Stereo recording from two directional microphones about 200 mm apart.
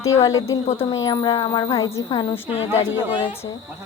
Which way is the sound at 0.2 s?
15° left (ahead or behind).